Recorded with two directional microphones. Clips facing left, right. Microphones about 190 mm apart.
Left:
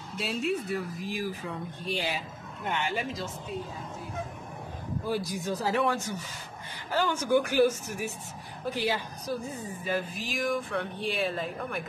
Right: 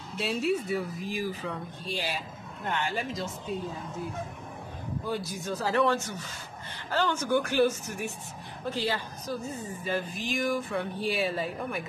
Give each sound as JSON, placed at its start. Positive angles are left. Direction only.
{"t": 0.2, "sound": "speech", "side_deg": 0}
{"t": 2.0, "sound": "a man's voice", "side_deg": 15}
{"t": 5.0, "sound": "speech", "side_deg": 10}